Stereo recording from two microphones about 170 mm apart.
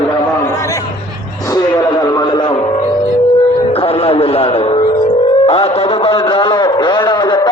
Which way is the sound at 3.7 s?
35° left (ahead or behind).